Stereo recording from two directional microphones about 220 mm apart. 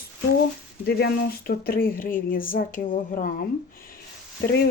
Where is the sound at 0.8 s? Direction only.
45° left (ahead or behind).